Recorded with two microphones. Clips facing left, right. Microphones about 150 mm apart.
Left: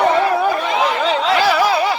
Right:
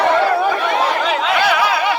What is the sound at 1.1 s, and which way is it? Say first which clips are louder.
Snicker: left 1 dB; 35° left (ahead or behind).